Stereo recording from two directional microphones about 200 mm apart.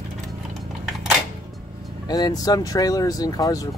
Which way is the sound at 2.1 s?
20° left (ahead or behind).